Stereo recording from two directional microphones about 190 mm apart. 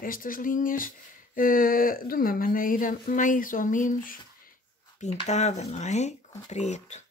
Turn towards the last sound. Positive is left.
turn(degrees=40)  # may be behind; listen again after turning